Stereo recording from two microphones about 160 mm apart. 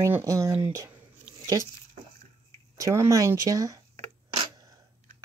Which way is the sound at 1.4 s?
20° right (ahead or behind).